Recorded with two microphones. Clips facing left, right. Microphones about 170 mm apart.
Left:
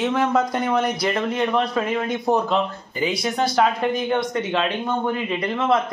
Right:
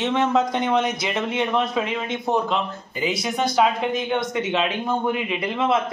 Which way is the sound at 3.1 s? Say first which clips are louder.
Left 1 dB; 25° right (ahead or behind).